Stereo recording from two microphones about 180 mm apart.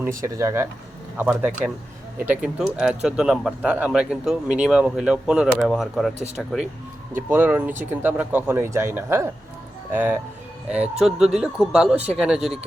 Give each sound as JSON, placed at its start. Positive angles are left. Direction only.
{"t": 0.2, "sound": "speech", "side_deg": -15}